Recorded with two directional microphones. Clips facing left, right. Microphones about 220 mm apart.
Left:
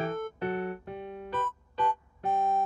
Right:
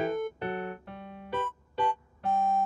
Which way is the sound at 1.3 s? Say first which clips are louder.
Right 4 dB; 10° right (ahead or behind).